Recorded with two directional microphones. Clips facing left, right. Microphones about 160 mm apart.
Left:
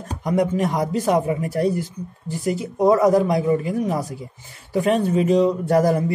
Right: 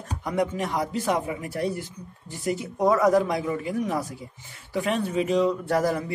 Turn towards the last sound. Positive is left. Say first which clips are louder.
# left 5 dB
turn(degrees=35)  # may be behind; listen again after turning